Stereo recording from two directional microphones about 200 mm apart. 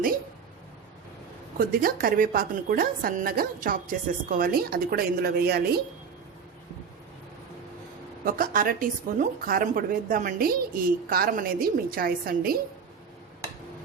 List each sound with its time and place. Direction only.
1.5 s speech: 45° right (ahead or behind)
8.2 s speech: 45° right (ahead or behind)